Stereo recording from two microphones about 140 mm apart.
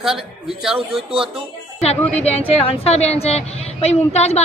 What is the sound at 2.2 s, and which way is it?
Speech, 45° left (ahead or behind).